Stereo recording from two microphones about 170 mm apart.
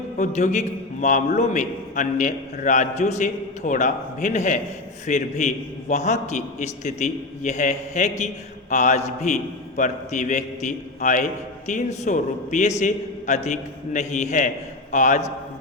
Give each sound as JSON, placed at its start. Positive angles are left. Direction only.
{"t": 0.2, "sound": "a man's voice", "side_deg": 45}